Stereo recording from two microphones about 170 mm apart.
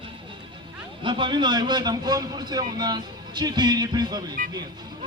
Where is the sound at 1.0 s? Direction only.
30° right (ahead or behind).